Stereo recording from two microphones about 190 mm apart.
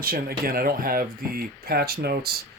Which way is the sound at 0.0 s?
50° right (ahead or behind).